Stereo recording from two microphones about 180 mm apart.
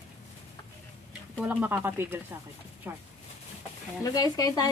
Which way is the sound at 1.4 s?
10° right (ahead or behind).